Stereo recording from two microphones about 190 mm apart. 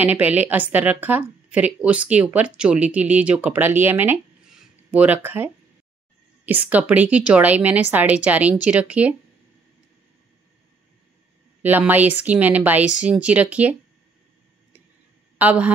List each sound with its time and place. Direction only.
0.0 s a woman's voice: 10° right (ahead or behind)
11.6 s a woman's voice: 10° right (ahead or behind)
15.3 s speech: 10° right (ahead or behind)